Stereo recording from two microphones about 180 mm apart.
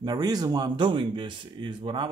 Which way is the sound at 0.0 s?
20° right (ahead or behind).